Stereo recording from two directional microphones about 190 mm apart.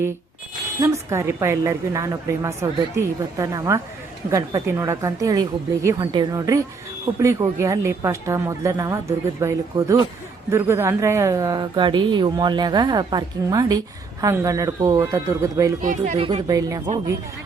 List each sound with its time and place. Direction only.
0.8 s a woman's voice: 15° right (ahead or behind)
15.8 s speech: 40° right (ahead or behind)
16.1 s a woman's voice: 30° right (ahead or behind)
16.5 s speech: 20° right (ahead or behind)